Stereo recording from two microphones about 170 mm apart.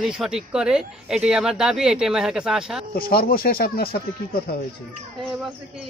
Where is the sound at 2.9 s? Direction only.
60° left (ahead or behind).